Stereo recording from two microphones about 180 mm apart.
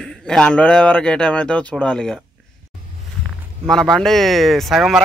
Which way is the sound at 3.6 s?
5° left (ahead or behind).